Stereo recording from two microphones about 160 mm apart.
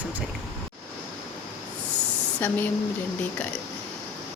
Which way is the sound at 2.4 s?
10° left (ahead or behind).